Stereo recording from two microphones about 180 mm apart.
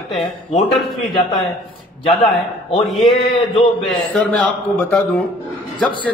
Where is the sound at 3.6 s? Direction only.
5° left (ahead or behind).